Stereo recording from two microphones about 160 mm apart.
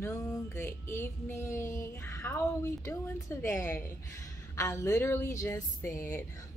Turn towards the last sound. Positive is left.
turn(degrees=15)  # may be behind; listen again after turning